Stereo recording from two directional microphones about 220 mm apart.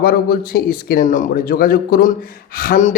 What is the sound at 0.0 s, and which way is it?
A man's voice, 45° left (ahead or behind).